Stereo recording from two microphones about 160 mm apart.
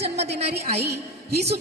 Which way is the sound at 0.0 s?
40° right (ahead or behind).